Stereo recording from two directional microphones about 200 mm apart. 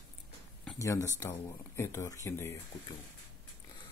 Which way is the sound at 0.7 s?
15° left (ahead or behind).